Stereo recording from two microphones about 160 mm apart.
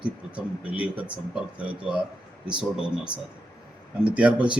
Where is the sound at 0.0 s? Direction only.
10° right (ahead or behind).